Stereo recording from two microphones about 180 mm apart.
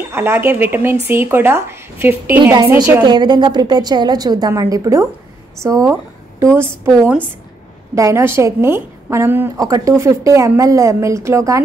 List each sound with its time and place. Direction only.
0.1 s a woman's voice: 10° right (ahead or behind)